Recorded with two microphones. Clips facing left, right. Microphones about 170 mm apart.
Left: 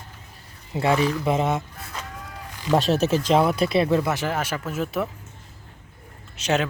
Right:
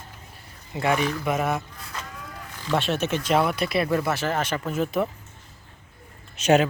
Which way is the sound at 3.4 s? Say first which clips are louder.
Left 4 dB; 30° left (ahead or behind).